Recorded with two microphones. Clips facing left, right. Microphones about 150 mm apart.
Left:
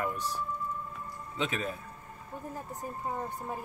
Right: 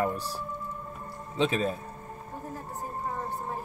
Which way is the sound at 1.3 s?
30° right (ahead or behind).